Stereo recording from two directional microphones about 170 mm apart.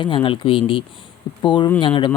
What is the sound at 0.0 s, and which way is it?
Speech, 30° left (ahead or behind).